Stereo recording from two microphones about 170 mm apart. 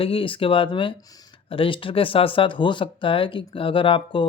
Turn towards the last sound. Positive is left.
turn(degrees=30)  # may be behind; listen again after turning